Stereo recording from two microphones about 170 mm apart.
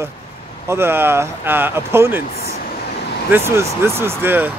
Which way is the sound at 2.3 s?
65° left (ahead or behind).